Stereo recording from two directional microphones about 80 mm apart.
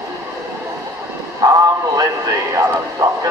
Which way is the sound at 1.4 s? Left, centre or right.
Right.